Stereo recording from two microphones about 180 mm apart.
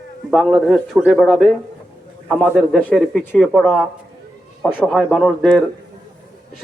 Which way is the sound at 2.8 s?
5° left (ahead or behind).